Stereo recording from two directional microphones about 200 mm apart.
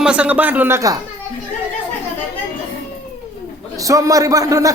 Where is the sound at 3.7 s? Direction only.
15° right (ahead or behind).